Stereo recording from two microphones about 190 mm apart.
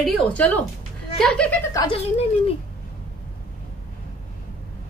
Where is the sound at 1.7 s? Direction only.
20° left (ahead or behind).